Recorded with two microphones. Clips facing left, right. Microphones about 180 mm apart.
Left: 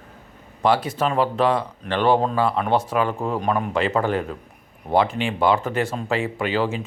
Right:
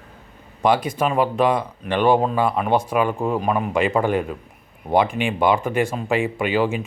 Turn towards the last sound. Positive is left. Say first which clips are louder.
# right 2 dB
turn(degrees=-15)  # may be behind; listen again after turning